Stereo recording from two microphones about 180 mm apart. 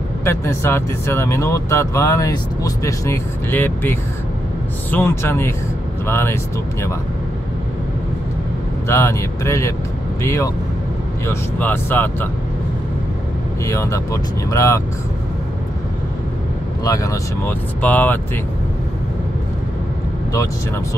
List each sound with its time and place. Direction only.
0.2 s speech: 15° left (ahead or behind)
8.8 s speech: 15° left (ahead or behind)
13.7 s speech: 15° left (ahead or behind)
16.8 s speech: 15° left (ahead or behind)